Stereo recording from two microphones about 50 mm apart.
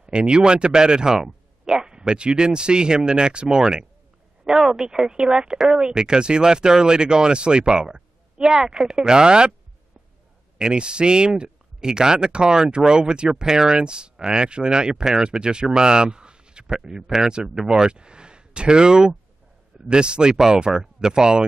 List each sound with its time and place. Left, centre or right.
0.0 s speech: centre
10.6 s a man's voice: centre